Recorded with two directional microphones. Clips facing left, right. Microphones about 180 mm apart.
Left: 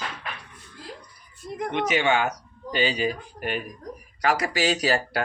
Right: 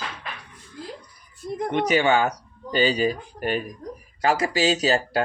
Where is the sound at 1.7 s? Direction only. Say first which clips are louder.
Right 3 dB; 35° right (ahead or behind).